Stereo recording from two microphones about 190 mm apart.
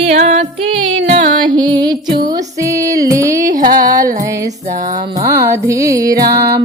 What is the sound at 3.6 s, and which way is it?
Music, 45° right (ahead or behind).